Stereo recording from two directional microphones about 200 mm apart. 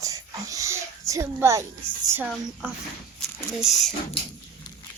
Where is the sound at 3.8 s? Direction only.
35° left (ahead or behind).